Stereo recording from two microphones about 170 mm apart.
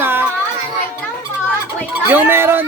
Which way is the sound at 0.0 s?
10° right (ahead or behind).